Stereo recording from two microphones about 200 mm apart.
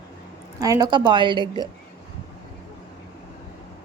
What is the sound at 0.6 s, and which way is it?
A woman's voice, 20° right (ahead or behind).